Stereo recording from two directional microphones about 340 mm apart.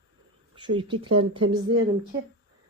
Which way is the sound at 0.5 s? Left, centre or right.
Centre.